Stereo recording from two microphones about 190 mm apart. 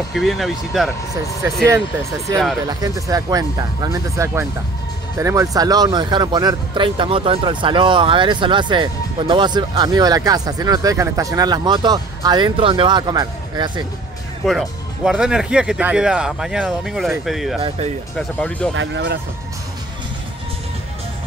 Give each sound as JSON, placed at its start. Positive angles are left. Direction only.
{"t": 0.1, "sound": "speech", "side_deg": 0}
{"t": 2.6, "sound": "speech", "side_deg": -20}
{"t": 14.4, "sound": "speech", "side_deg": 0}
{"t": 17.6, "sound": "speech", "side_deg": -35}
{"t": 18.1, "sound": "speech", "side_deg": 5}
{"t": 18.8, "sound": "speech", "side_deg": -65}